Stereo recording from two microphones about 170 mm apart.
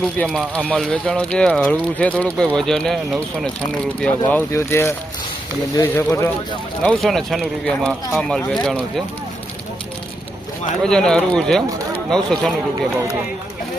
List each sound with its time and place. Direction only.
0.0 s speech: 5° left (ahead or behind)
6.8 s speech: centre (ahead or behind)
10.8 s speech: 5° left (ahead or behind)